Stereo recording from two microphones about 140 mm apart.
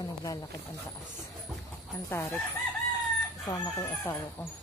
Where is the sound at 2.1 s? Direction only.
20° left (ahead or behind).